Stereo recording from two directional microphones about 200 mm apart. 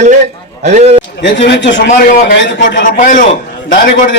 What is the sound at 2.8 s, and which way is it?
Speech, 40° left (ahead or behind).